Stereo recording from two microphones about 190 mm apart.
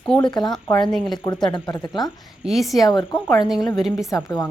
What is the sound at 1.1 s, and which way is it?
Speech, 20° left (ahead or behind).